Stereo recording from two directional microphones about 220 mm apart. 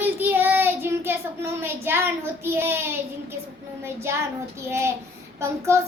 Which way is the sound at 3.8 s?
10° right (ahead or behind).